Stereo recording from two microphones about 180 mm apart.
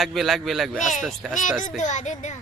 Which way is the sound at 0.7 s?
45° left (ahead or behind).